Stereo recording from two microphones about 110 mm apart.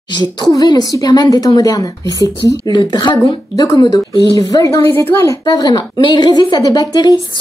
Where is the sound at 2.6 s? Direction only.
45° left (ahead or behind); by 5.4 s 25° left (ahead or behind).